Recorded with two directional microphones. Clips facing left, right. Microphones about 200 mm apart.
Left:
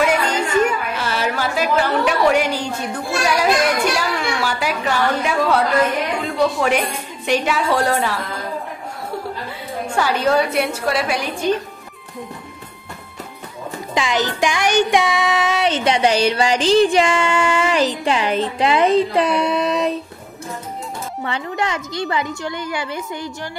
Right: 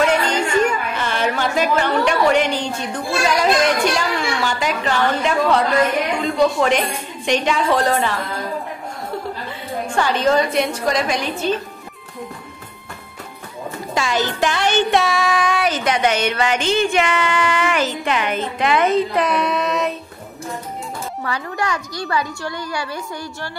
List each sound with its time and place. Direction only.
0.0 s a sound: 10° left (ahead or behind)
0.7 s a woman's voice: 5° left (ahead or behind)
9.9 s a woman's voice: 10° left (ahead or behind)
13.9 s music: 15° left (ahead or behind)
21.2 s music: 20° left (ahead or behind)